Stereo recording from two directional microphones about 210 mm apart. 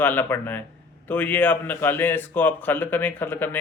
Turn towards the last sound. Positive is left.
turn(degrees=10)  # may be behind; listen again after turning